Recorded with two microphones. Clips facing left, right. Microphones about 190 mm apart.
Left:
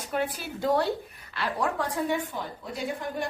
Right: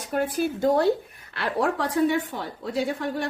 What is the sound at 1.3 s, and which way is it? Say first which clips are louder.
Speech: right 4 dB; 60° right (ahead or behind).